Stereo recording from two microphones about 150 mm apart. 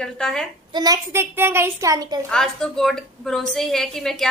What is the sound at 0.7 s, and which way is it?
A child's voice, 25° right (ahead or behind).